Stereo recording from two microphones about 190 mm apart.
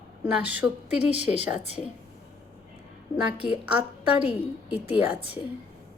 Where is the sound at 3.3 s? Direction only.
5° right (ahead or behind).